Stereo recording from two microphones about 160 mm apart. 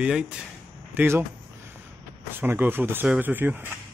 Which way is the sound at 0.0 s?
5° right (ahead or behind).